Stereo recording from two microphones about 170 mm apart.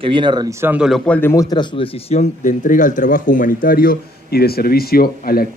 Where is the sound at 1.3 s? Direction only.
20° left (ahead or behind).